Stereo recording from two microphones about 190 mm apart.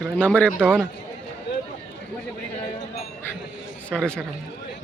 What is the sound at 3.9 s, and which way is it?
Speech, 5° left (ahead or behind).